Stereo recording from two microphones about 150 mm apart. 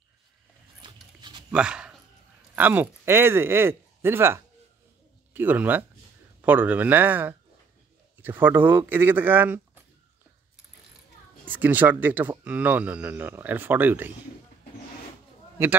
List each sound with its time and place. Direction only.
1.5 s a sound: 5° right (ahead or behind)
2.5 s speech: 10° right (ahead or behind)
11.4 s speech: 10° right (ahead or behind)